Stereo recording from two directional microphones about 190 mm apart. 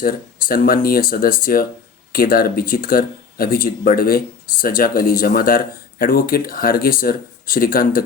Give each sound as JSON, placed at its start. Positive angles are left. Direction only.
{"t": 0.0, "sound": "speech", "side_deg": 50}